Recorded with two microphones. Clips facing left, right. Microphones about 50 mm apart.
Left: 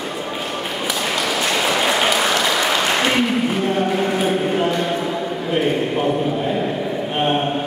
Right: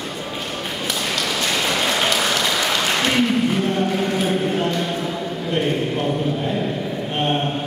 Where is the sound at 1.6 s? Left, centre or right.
Centre.